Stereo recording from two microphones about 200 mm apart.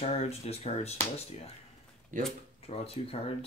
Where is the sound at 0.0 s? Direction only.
30° left (ahead or behind).